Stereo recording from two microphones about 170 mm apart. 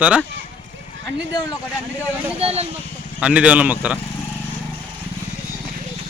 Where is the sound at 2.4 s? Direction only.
35° right (ahead or behind).